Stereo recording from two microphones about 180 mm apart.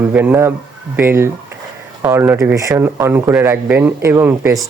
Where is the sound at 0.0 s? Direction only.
10° right (ahead or behind).